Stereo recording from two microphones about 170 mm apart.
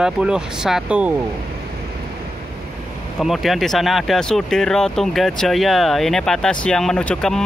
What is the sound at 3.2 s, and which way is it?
Speech, centre (ahead or behind).